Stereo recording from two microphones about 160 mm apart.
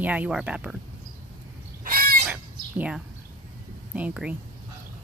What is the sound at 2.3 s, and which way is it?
Chicken, 10° right (ahead or behind).